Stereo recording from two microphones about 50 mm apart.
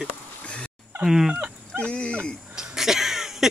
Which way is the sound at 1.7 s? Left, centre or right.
Left.